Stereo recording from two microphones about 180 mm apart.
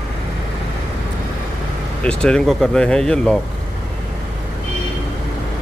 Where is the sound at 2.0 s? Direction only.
5° left (ahead or behind).